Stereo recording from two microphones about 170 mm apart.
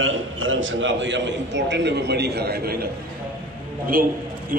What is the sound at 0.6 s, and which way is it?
A man's voice, 90° right.